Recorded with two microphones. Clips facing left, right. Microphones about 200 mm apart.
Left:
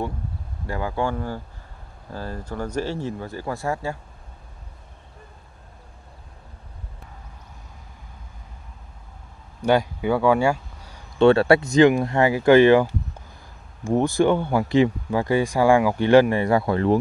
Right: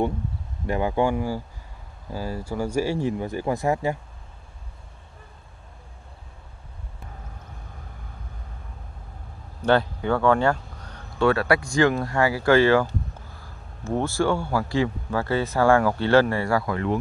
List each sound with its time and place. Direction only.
0.7 s speech: 20° right (ahead or behind)
9.6 s speech: 10° left (ahead or behind)
11.1 s a man's voice: 25° left (ahead or behind)